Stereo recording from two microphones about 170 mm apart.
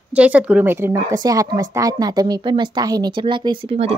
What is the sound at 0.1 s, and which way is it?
A woman's voice, 10° right (ahead or behind).